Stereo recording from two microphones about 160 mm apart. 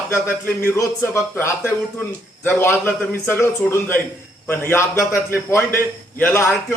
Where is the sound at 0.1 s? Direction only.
10° left (ahead or behind).